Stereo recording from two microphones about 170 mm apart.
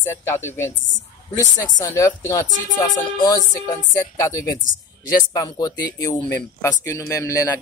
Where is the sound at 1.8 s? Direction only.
20° left (ahead or behind).